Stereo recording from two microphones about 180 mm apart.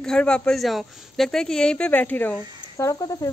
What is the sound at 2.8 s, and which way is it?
Speech, 20° left (ahead or behind).